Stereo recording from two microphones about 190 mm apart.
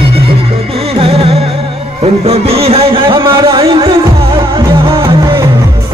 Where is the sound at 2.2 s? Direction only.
30° right (ahead or behind).